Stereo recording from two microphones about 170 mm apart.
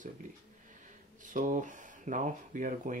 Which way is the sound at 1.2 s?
50° right (ahead or behind).